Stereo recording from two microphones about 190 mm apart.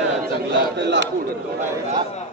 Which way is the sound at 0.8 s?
65° right (ahead or behind).